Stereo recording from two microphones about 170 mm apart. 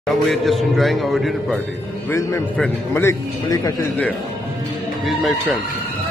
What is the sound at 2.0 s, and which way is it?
A man's voice, 15° left (ahead or behind).